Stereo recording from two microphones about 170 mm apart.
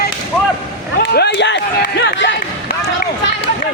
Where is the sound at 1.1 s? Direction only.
75° left (ahead or behind).